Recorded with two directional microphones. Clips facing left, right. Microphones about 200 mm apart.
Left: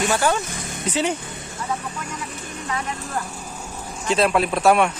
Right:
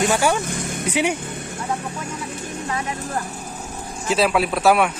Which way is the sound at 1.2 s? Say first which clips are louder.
Right 5 dB; 55° right (ahead or behind).